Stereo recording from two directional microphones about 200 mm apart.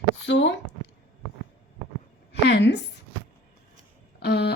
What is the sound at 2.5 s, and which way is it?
Speech, 60° left (ahead or behind).